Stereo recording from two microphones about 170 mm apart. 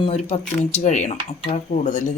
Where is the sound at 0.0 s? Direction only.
35° left (ahead or behind).